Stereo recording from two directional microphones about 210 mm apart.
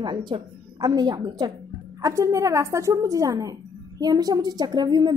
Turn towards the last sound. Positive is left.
turn(degrees=-20)  # may be behind; listen again after turning